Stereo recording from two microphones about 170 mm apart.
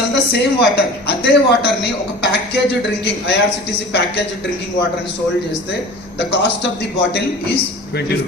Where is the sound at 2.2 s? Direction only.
85° left.